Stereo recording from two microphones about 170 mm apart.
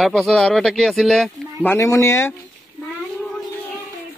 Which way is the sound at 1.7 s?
15° left (ahead or behind).